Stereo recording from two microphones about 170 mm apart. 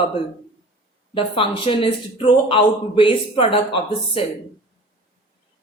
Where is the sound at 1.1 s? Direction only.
30° left (ahead or behind).